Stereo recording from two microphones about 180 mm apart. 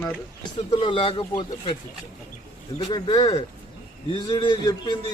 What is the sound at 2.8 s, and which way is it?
A man's voice, 25° left (ahead or behind).